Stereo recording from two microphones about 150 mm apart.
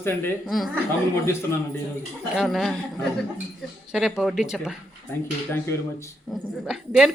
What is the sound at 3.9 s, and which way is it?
Speech, 5° right (ahead or behind).